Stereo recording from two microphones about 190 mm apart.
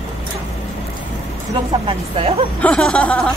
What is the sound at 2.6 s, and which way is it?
Speech, 5° left (ahead or behind).